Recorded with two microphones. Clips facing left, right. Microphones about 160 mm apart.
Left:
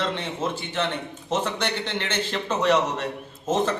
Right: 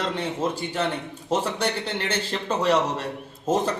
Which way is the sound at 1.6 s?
35° right (ahead or behind).